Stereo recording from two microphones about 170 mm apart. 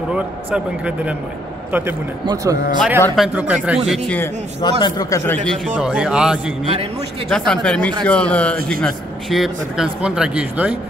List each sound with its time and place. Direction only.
0.1 s a man's voice: 5° right (ahead or behind); by 2.8 s 20° right (ahead or behind)
3.2 s a man's voice: 10° right (ahead or behind)
4.6 s a man's voice: 25° left (ahead or behind); by 5.6 s 10° left (ahead or behind)
5.8 s a man's voice: 5° right (ahead or behind)